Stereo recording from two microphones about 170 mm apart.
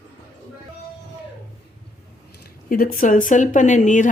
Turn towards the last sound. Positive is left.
turn(degrees=45)  # may be behind; listen again after turning